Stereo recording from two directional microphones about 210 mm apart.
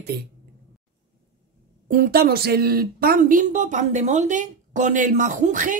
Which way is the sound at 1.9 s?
45° right (ahead or behind).